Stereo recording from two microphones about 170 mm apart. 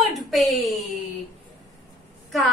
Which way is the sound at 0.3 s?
Centre (ahead or behind).